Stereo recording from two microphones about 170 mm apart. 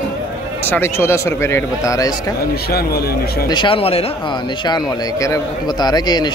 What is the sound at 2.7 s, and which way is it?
Speech, 65° left (ahead or behind).